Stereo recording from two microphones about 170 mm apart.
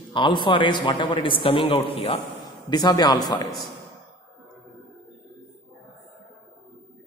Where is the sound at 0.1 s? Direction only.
30° left (ahead or behind).